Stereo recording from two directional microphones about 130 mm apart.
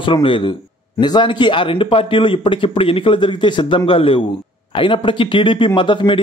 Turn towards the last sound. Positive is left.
turn(degrees=40)  # may be behind; listen again after turning